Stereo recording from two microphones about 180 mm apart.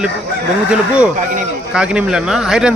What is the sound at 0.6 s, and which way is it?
Speech, 5° right (ahead or behind).